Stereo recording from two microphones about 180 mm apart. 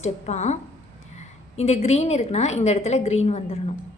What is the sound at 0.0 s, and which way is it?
A woman's voice, 40° left (ahead or behind).